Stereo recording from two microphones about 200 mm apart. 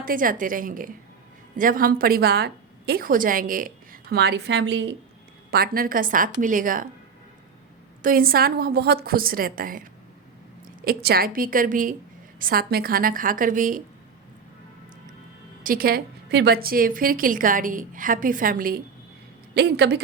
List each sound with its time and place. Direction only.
0.0 s a woman's voice: 45° right (ahead or behind)
4.1 s a woman's voice: 55° right (ahead or behind)
5.5 s a woman's voice: 50° right (ahead or behind)
8.0 s a woman's voice: 45° right (ahead or behind)
10.8 s a woman's voice: 50° right (ahead or behind)
15.6 s a woman's voice: 45° right (ahead or behind)
19.5 s a woman's voice: 55° right (ahead or behind)